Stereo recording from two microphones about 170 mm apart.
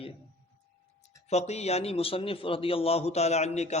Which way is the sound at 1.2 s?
40° left (ahead or behind).